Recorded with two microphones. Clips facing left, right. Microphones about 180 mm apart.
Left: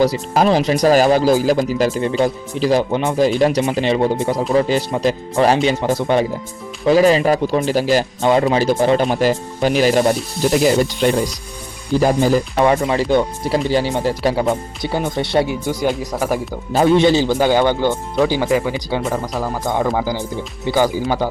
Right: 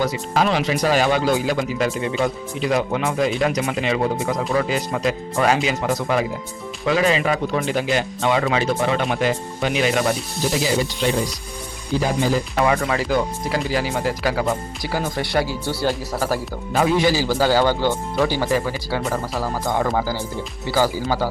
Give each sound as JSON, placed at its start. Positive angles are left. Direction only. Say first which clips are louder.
{"t": 0.0, "sound": "speech", "louder": "left 5 dB", "side_deg": 35}
{"t": 10.5, "sound": "speech", "louder": "left 7 dB", "side_deg": 55}
{"t": 12.5, "sound": "a man's voice", "louder": "left 4 dB", "side_deg": 25}
{"t": 16.7, "sound": "a man's voice", "louder": "left 5 dB", "side_deg": 25}